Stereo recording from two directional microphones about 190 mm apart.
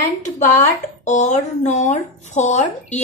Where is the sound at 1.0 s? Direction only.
40° left (ahead or behind).